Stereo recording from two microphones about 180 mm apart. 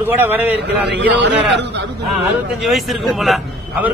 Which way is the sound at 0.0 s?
10° right (ahead or behind).